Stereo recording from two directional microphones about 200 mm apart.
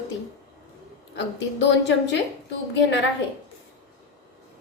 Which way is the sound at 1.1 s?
65° left (ahead or behind).